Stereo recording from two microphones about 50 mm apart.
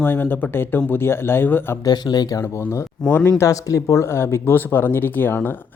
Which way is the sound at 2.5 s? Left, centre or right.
Left.